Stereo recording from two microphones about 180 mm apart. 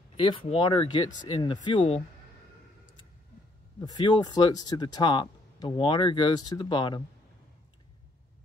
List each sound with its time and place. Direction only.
0.2 s speech: 30° left (ahead or behind)
3.8 s speech: 20° left (ahead or behind)